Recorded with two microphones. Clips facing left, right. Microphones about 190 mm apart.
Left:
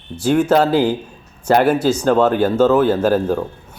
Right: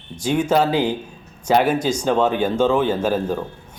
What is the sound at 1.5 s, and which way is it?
Speech, 10° left (ahead or behind).